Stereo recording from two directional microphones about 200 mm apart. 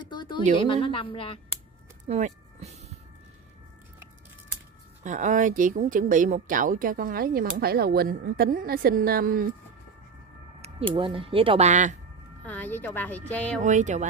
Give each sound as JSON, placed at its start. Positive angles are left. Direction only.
{"t": 0.1, "sound": "a sound", "side_deg": 20}
{"t": 0.8, "sound": "a woman's voice", "side_deg": 25}
{"t": 2.0, "sound": "music", "side_deg": -35}
{"t": 5.0, "sound": "speech", "side_deg": -40}
{"t": 11.0, "sound": "speech", "side_deg": -25}
{"t": 12.4, "sound": "speech", "side_deg": 10}
{"t": 13.6, "sound": "speech", "side_deg": -35}